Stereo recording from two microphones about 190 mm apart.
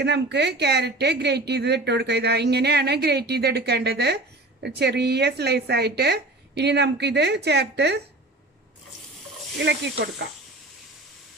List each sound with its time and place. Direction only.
0.0 s speech: 60° right (ahead or behind)
9.6 s speech: 65° right (ahead or behind)